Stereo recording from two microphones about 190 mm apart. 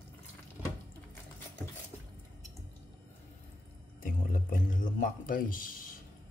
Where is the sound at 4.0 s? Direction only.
45° left (ahead or behind).